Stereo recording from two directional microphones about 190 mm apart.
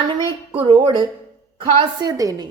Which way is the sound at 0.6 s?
25° right (ahead or behind).